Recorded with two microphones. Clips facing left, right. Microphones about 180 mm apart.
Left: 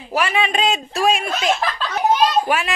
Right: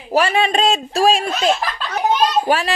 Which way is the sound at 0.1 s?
30° right (ahead or behind).